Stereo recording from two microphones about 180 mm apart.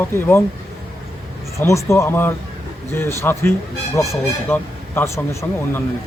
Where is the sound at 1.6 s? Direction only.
15° left (ahead or behind).